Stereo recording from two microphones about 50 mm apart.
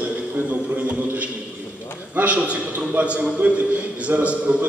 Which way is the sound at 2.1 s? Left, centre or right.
Right.